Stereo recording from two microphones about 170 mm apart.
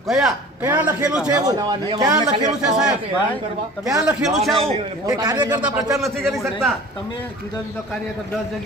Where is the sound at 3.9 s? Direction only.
5° right (ahead or behind).